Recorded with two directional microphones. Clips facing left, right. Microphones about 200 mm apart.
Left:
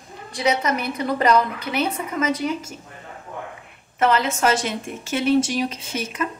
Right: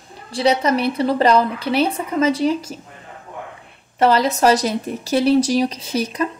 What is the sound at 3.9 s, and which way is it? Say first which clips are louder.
A woman's voice: right 4 dB; 35° right (ahead or behind).